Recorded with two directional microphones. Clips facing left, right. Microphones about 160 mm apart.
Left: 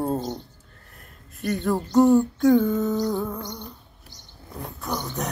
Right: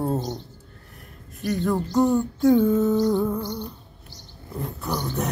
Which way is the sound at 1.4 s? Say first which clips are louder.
Right 1 dB; centre (ahead or behind).